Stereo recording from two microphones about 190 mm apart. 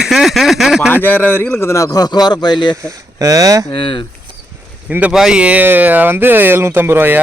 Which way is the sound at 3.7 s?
25° left (ahead or behind).